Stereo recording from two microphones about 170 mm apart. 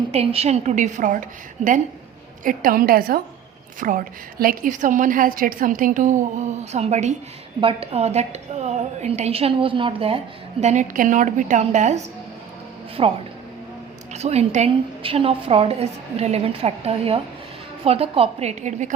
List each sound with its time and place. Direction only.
0.1 s a woman's voice: 35° right (ahead or behind)
10.6 s a woman's voice: 45° right (ahead or behind)
13.0 s a woman's voice: 30° right (ahead or behind)